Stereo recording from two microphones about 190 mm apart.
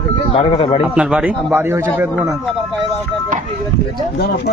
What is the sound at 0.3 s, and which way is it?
Speech, 30° left (ahead or behind).